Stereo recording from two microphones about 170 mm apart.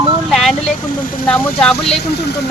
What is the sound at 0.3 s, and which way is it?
Vehicle, centre (ahead or behind).